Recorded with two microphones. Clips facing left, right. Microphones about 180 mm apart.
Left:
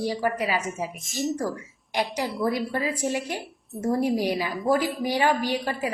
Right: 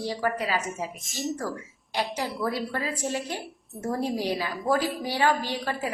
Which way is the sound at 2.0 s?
15° left (ahead or behind).